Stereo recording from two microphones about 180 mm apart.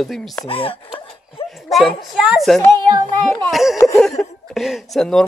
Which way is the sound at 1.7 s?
Centre (ahead or behind).